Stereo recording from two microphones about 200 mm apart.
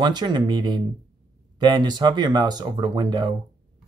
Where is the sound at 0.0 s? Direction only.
20° right (ahead or behind).